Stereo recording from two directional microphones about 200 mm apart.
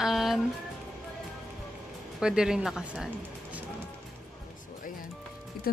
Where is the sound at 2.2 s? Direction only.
5° right (ahead or behind).